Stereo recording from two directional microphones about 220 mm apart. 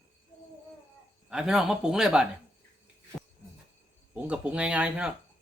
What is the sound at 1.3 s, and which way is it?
Speech, centre (ahead or behind).